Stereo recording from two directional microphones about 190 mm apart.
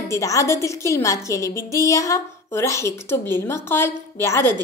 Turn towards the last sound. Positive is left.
turn(degrees=15)  # may be behind; listen again after turning